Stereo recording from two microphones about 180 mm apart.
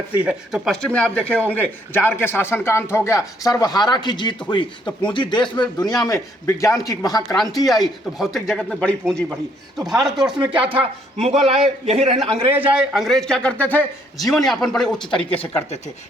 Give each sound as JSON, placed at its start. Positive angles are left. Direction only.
{"t": 0.2, "sound": "a man's voice", "side_deg": -5}
{"t": 7.5, "sound": "a man's voice", "side_deg": 0}
{"t": 10.8, "sound": "a man's voice", "side_deg": -35}
{"t": 12.5, "sound": "a man's voice", "side_deg": -5}